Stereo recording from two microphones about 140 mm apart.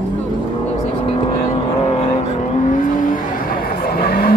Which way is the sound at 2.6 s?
65° left (ahead or behind).